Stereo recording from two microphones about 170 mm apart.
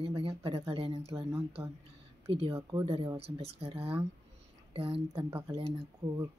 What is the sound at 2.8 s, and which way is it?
Speech, 35° right (ahead or behind).